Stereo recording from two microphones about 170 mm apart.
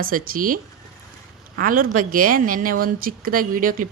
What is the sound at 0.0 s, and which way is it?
A woman's voice, 55° right (ahead or behind).